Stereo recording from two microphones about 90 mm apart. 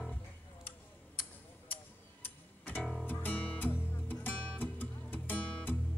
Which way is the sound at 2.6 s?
15° left (ahead or behind).